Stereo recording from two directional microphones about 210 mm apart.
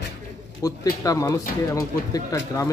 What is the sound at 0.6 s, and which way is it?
Speech, 15° left (ahead or behind).